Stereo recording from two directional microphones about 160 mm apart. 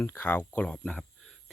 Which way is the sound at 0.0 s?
15° left (ahead or behind).